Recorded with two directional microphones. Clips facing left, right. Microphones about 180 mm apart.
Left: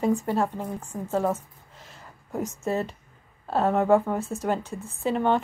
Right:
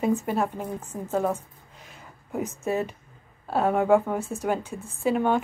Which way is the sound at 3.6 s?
Centre (ahead or behind).